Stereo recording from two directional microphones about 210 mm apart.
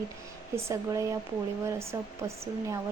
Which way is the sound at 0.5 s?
15° right (ahead or behind).